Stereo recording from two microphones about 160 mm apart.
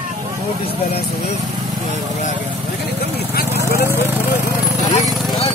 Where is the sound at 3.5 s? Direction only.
15° right (ahead or behind).